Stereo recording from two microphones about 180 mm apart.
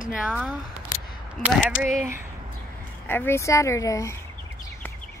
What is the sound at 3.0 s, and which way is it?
Speech, 10° left (ahead or behind).